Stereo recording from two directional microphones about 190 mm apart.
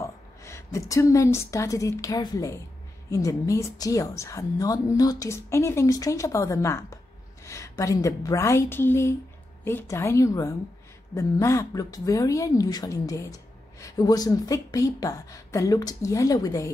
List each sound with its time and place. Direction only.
0.0 s a woman's voice: 15° left (ahead or behind)